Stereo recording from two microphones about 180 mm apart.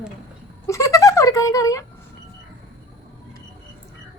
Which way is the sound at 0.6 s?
15° left (ahead or behind).